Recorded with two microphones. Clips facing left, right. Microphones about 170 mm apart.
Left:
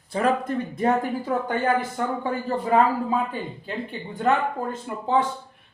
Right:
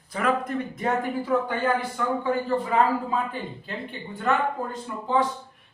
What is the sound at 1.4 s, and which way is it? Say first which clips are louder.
Speech: left 2 dB; 45° left (ahead or behind).